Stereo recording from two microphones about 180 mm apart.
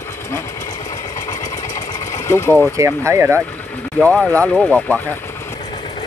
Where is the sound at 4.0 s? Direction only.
5° left (ahead or behind).